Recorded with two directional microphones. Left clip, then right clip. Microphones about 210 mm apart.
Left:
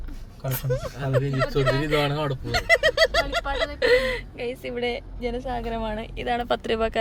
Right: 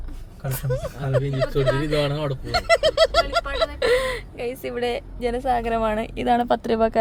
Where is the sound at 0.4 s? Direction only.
Centre (ahead or behind).